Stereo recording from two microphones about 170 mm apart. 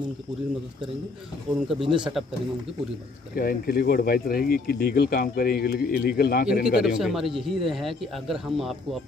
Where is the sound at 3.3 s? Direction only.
60° left (ahead or behind).